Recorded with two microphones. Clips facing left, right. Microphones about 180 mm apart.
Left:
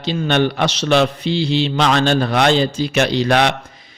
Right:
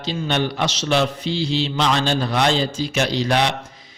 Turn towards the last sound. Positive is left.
turn(degrees=60)  # may be behind; listen again after turning